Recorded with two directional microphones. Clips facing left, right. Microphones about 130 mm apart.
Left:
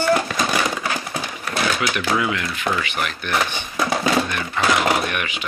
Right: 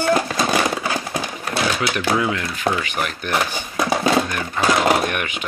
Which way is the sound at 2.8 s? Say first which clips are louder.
Right 1 dB; 40° right (ahead or behind).